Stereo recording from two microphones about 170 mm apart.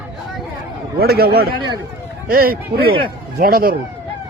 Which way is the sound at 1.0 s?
65° right (ahead or behind).